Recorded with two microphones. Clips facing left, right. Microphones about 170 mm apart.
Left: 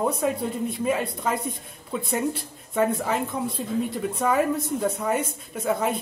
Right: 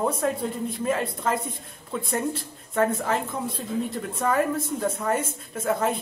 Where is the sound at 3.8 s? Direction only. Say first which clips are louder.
Left 2 dB; 5° left (ahead or behind).